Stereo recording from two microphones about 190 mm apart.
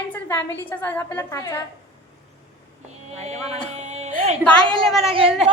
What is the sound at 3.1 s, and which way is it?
A woman's voice, 35° right (ahead or behind).